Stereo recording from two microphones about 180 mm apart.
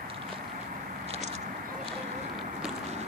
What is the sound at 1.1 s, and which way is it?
Vehicle, 40° right (ahead or behind).